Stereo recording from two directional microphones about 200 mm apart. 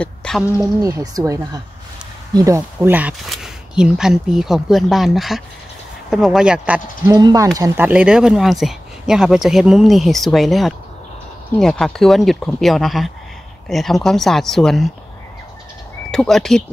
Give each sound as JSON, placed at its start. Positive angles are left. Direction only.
{"t": 0.0, "sound": "a sound", "side_deg": 5}
{"t": 0.8, "sound": "speech", "side_deg": -15}
{"t": 7.1, "sound": "speech", "side_deg": -15}
{"t": 16.1, "sound": "speech", "side_deg": 0}